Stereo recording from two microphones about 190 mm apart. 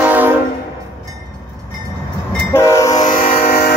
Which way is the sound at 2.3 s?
5° left (ahead or behind).